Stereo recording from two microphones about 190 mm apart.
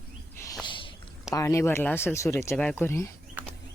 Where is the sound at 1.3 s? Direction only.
15° left (ahead or behind).